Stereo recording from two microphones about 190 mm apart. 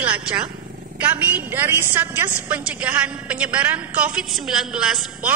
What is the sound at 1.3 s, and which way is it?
A woman's voice, 10° right (ahead or behind).